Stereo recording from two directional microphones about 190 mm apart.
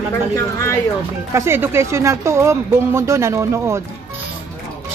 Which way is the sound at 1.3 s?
15° right (ahead or behind).